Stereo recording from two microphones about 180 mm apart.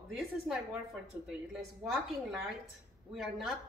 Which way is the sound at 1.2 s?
Centre (ahead or behind).